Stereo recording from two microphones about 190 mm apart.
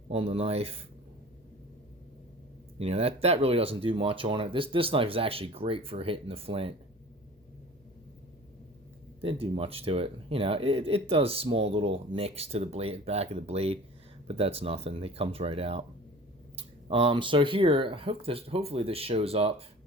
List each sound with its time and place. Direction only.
0.1 s speech: 30° right (ahead or behind)
2.7 s speech: 30° right (ahead or behind)
9.2 s speech: 30° right (ahead or behind)